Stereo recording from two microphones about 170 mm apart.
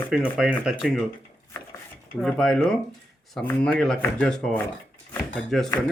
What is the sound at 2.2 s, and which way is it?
Speech, centre (ahead or behind).